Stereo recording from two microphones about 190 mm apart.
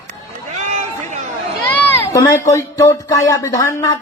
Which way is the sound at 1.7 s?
10° left (ahead or behind).